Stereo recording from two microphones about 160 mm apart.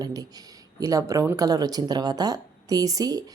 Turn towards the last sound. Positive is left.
turn(degrees=-25)  # may be behind; listen again after turning